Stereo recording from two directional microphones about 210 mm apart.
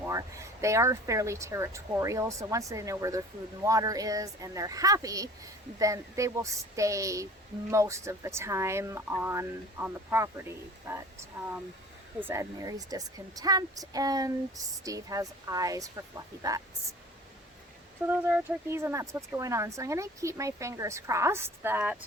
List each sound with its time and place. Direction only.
0.0 s speech: 15° right (ahead or behind)
18.1 s speech: 10° right (ahead or behind)